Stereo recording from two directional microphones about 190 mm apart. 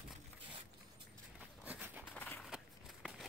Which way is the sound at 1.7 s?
10° right (ahead or behind).